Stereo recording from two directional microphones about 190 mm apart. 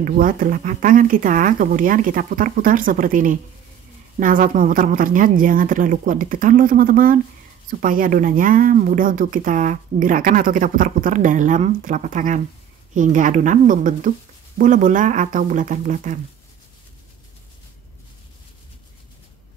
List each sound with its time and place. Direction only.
0.0 s speech: 45° right (ahead or behind)